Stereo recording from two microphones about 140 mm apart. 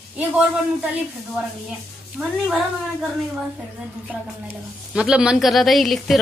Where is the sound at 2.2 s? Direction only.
Centre (ahead or behind).